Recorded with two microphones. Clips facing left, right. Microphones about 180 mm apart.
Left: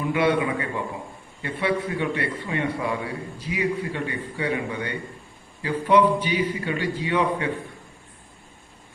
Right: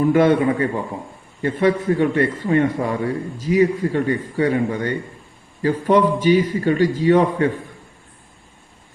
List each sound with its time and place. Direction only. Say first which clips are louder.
0.0 s a man's voice: right 7 dB; 45° right (ahead or behind)